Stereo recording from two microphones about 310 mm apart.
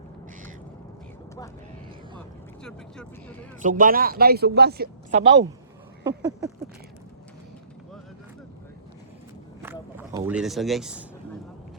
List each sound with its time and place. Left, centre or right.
2.6 s speech: centre
3.6 s speech: right
6.1 s a sound: centre
9.6 s speech: centre